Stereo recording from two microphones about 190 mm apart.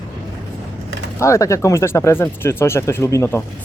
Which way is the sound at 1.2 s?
15° left (ahead or behind).